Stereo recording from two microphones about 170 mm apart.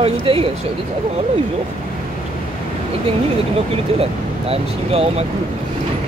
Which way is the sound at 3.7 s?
35° right (ahead or behind).